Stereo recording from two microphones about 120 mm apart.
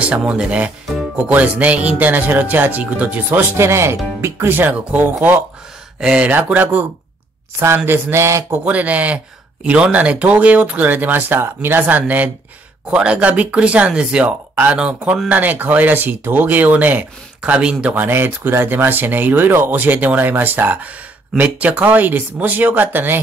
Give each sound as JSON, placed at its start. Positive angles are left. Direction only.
{"t": 0.0, "sound": "speech", "side_deg": -10}
{"t": 8.6, "sound": "speech", "side_deg": -10}